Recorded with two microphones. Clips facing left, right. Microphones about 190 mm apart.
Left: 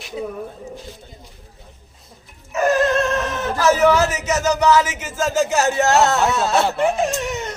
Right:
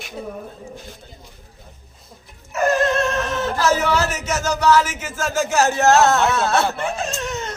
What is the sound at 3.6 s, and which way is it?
Speech, 15° left (ahead or behind).